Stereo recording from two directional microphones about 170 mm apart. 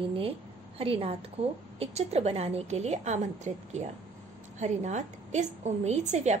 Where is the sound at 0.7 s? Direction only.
35° right (ahead or behind).